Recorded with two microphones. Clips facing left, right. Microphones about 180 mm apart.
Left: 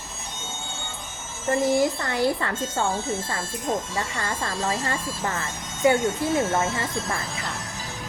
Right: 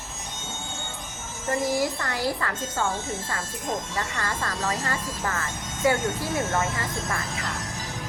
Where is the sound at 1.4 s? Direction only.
25° left (ahead or behind).